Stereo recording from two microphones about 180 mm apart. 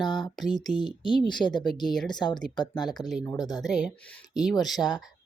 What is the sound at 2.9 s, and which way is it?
Speech, centre (ahead or behind).